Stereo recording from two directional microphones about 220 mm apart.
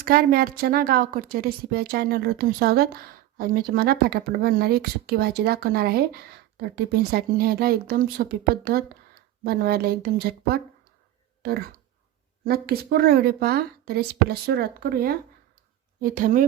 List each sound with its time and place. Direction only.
0.0 s a woman's voice: 45° right (ahead or behind)
12.5 s a woman's voice: 45° right (ahead or behind)